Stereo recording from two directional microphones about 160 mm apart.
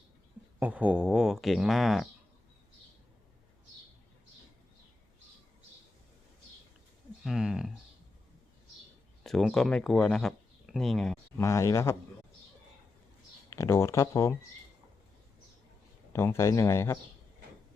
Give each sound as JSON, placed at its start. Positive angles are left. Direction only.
{"t": 0.6, "sound": "speech", "side_deg": -10}
{"t": 7.3, "sound": "speech", "side_deg": -5}
{"t": 9.2, "sound": "speech", "side_deg": 0}
{"t": 11.3, "sound": "speech", "side_deg": 20}
{"t": 13.5, "sound": "speech", "side_deg": 15}
{"t": 16.1, "sound": "speech", "side_deg": 15}